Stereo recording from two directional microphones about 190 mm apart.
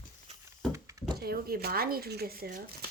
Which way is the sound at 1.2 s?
55° right (ahead or behind).